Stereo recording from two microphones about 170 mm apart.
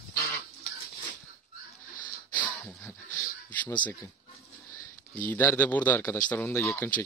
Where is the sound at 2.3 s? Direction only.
10° left (ahead or behind).